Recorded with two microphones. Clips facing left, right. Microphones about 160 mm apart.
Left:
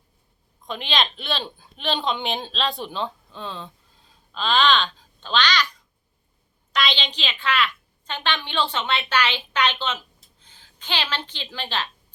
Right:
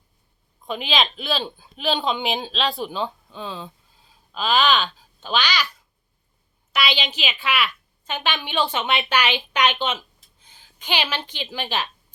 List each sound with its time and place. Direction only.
0.6 s speech: 5° right (ahead or behind)
6.7 s a woman's voice: 5° right (ahead or behind)